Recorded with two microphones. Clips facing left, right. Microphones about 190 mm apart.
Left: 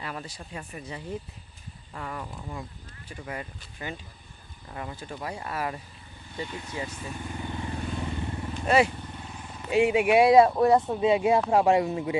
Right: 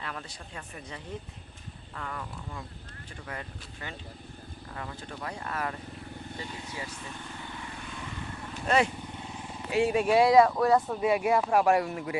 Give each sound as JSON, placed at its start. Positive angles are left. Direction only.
{"t": 0.0, "sound": "speech", "side_deg": 10}
{"t": 6.9, "sound": "vehicle", "side_deg": 10}
{"t": 7.6, "sound": "vehicle", "side_deg": 30}
{"t": 8.6, "sound": "speech", "side_deg": 5}
{"t": 9.6, "sound": "speech", "side_deg": 20}